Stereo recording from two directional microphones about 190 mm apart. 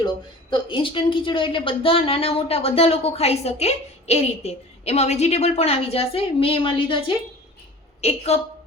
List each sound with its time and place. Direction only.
0.5 s a woman's voice: 25° left (ahead or behind)
8.0 s a woman's voice: 35° left (ahead or behind)